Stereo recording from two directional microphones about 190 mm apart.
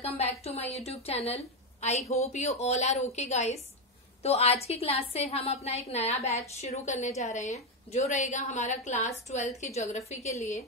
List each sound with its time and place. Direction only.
0.0 s a woman's voice: 30° left (ahead or behind)